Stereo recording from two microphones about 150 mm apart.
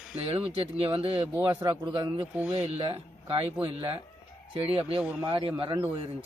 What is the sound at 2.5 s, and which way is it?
A man's voice, 45° right (ahead or behind).